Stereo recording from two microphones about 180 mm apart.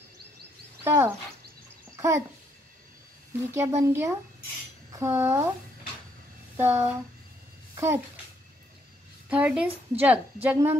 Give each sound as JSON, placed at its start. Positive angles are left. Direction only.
{"t": 0.8, "sound": "a woman's voice", "side_deg": -15}
{"t": 2.0, "sound": "a sound", "side_deg": -15}
{"t": 3.5, "sound": "a woman's voice", "side_deg": -15}
{"t": 6.5, "sound": "speech", "side_deg": -15}
{"t": 7.7, "sound": "a sound", "side_deg": -15}
{"t": 9.3, "sound": "a woman's voice", "side_deg": -5}